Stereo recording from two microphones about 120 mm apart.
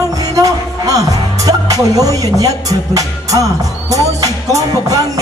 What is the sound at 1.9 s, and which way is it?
Music, 30° right (ahead or behind).